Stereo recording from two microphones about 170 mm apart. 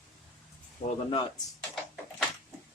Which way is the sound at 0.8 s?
45° left (ahead or behind).